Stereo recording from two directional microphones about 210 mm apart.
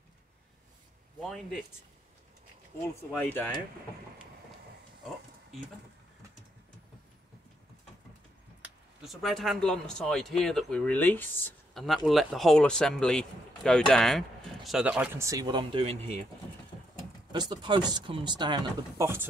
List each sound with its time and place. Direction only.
1.2 s speech: centre (ahead or behind)
3.0 s speech: 5° left (ahead or behind)
8.6 s speech: centre (ahead or behind); by 16.2 s 30° right (ahead or behind)
17.3 s speech: 20° right (ahead or behind)